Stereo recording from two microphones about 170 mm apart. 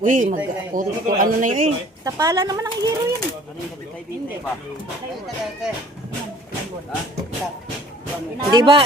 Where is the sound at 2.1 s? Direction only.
20° right (ahead or behind).